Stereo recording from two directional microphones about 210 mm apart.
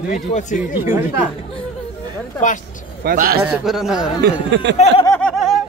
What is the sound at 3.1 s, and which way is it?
Speech, 45° right (ahead or behind).